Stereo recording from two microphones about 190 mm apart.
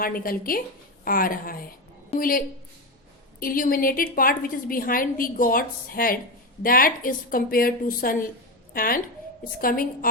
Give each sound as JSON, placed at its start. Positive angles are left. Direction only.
{"t": 0.0, "sound": "a woman's voice", "side_deg": 50}
{"t": 3.4, "sound": "a woman's voice", "side_deg": 50}